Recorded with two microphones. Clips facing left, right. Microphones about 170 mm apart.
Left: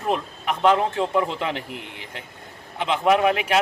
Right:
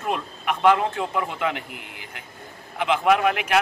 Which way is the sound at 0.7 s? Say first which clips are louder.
Left 3 dB; 30° left (ahead or behind).